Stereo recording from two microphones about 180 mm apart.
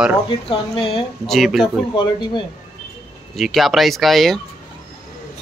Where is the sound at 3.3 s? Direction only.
Centre (ahead or behind).